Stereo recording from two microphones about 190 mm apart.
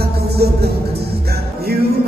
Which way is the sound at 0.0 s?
55° right (ahead or behind).